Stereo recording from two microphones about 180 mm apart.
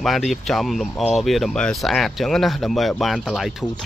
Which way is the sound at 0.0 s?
Centre (ahead or behind).